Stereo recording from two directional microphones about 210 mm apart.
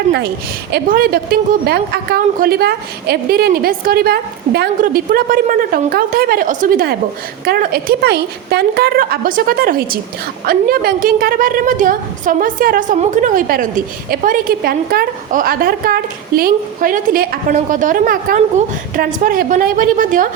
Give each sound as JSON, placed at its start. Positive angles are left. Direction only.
{"t": 0.7, "sound": "a woman's voice", "side_deg": -45}